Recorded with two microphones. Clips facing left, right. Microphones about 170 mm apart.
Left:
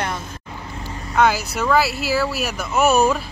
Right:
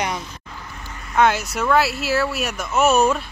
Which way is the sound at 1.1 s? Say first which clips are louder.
Even; centre (ahead or behind).